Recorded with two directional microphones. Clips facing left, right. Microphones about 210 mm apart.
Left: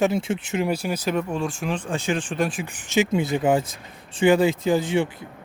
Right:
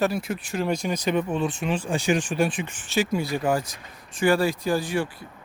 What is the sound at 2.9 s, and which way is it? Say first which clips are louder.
Speech: left 3 dB; 20° left (ahead or behind).